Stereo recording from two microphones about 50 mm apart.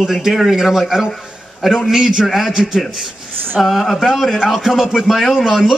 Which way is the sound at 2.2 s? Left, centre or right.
Centre.